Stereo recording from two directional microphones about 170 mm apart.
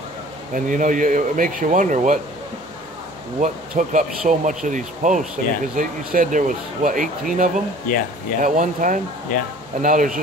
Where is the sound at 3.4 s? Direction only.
50° right (ahead or behind).